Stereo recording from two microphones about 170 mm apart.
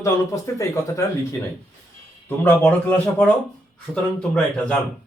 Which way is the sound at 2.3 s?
10° left (ahead or behind).